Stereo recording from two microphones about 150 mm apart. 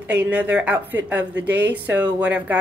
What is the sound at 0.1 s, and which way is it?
A woman's voice, 10° right (ahead or behind).